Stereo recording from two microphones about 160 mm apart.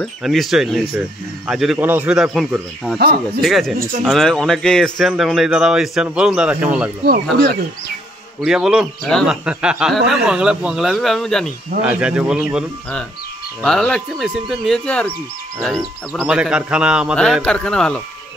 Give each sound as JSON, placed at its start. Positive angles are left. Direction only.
{"t": 0.0, "sound": "speech", "side_deg": 0}
{"t": 3.0, "sound": "speech", "side_deg": -75}
{"t": 3.4, "sound": "speech", "side_deg": 0}
{"t": 8.4, "sound": "speech", "side_deg": -5}
{"t": 11.8, "sound": "speech", "side_deg": -10}
{"t": 16.2, "sound": "speech", "side_deg": -5}
{"t": 17.2, "sound": "speech", "side_deg": 5}